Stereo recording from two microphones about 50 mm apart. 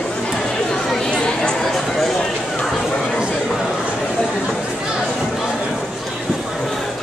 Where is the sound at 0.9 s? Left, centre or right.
Centre.